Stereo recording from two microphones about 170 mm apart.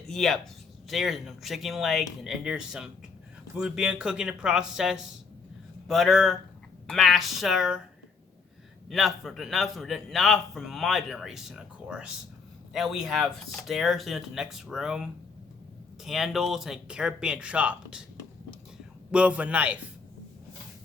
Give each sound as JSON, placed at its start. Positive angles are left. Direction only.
{"t": 0.1, "sound": "a man's voice", "side_deg": 0}
{"t": 8.9, "sound": "a man's voice", "side_deg": 0}
{"t": 19.1, "sound": "a man's voice", "side_deg": -10}